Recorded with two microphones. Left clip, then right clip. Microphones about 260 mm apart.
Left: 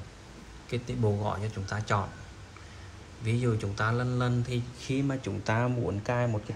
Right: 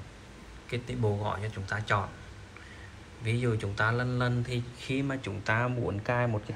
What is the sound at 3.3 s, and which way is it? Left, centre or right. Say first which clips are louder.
Speech: even; centre.